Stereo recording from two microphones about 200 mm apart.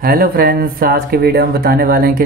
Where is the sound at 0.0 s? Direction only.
50° right (ahead or behind).